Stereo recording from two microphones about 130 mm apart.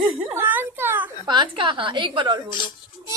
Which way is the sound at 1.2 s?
35° right (ahead or behind).